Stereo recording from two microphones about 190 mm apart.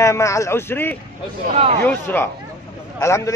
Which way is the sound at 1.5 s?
35° right (ahead or behind).